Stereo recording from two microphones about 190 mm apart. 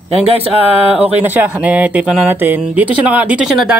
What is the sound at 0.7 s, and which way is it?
Speech, 30° left (ahead or behind).